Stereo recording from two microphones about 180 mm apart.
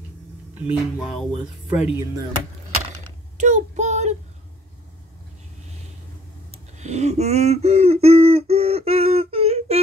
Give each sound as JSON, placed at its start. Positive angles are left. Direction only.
{"t": 0.6, "sound": "speech", "side_deg": 0}
{"t": 3.3, "sound": "child singing", "side_deg": -40}
{"t": 6.8, "sound": "a sound", "side_deg": -40}